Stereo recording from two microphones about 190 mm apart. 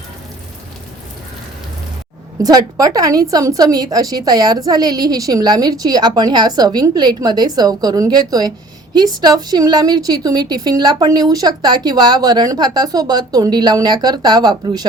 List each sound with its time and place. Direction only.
2.4 s a woman's voice: 20° right (ahead or behind)